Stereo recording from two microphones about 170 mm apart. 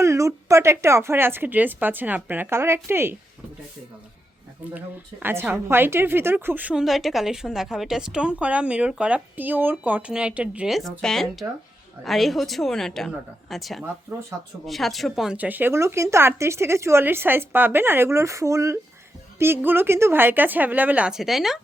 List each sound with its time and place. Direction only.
0.0 s a woman's voice: 20° right (ahead or behind)
4.6 s a woman's voice: 10° right (ahead or behind)